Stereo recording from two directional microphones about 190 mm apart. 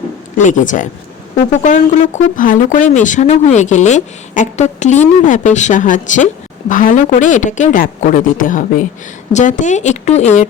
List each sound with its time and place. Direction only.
0.3 s a woman's voice: 40° left (ahead or behind)